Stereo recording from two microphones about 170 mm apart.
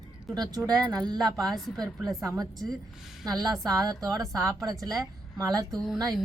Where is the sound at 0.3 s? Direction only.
25° right (ahead or behind).